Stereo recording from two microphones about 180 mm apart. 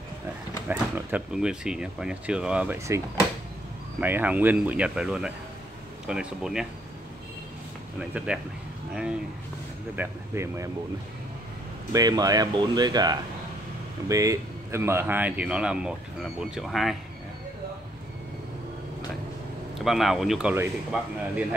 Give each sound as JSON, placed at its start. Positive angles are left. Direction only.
{"t": 0.7, "sound": "speech", "side_deg": -10}
{"t": 4.0, "sound": "speech", "side_deg": -10}
{"t": 8.0, "sound": "speech", "side_deg": -5}
{"t": 9.9, "sound": "speech", "side_deg": -15}
{"t": 11.9, "sound": "speech", "side_deg": -20}
{"t": 19.8, "sound": "speech", "side_deg": 0}